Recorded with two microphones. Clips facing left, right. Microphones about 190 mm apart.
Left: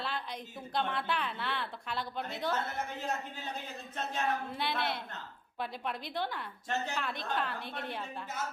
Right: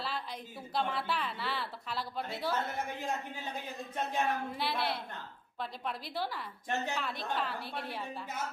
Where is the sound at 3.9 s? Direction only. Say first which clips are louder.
Right 1 dB; 15° right (ahead or behind).